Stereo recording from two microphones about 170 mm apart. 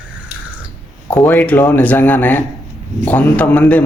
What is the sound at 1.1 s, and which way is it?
A man's voice, 10° left (ahead or behind).